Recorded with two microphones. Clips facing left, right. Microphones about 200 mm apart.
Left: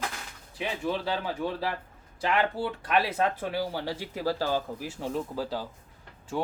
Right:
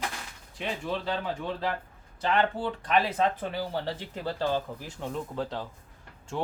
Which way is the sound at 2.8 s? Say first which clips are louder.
Right 1 dB; 10° left (ahead or behind).